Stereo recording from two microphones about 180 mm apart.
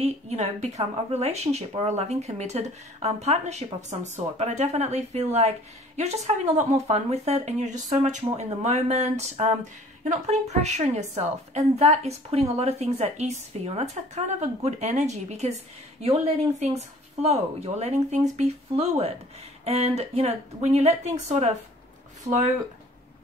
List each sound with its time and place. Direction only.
0.0 s speech: 35° right (ahead or behind)